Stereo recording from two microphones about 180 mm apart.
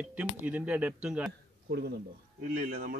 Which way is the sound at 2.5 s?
50° right (ahead or behind).